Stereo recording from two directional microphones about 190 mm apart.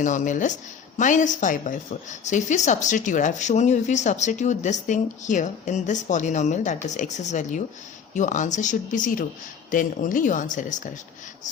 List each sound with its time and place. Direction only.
0.0 s a woman's voice: 40° left (ahead or behind)